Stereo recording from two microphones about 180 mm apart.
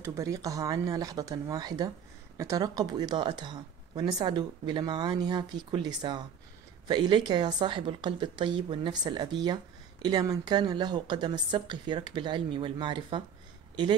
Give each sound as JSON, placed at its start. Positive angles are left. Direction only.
{"t": 0.0, "sound": "speech", "side_deg": -15}